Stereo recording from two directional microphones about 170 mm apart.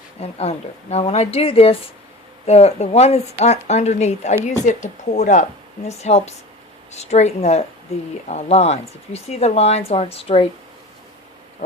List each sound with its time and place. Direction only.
0.2 s speech: 35° left (ahead or behind)